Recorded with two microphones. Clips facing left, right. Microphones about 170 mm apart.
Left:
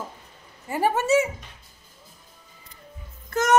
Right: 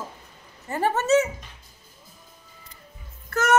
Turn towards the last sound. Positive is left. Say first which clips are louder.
# left 1 dB
turn(degrees=15)  # may be behind; listen again after turning